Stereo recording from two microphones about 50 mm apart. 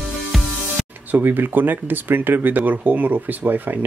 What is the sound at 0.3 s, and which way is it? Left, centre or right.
Music, centre.